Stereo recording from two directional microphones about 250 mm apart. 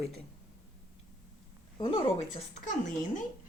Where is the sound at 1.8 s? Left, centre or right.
Left.